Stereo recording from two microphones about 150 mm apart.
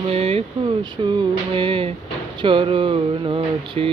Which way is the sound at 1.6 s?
35° right (ahead or behind).